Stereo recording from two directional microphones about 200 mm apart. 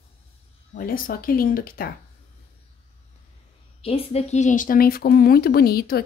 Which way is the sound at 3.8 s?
30° left (ahead or behind).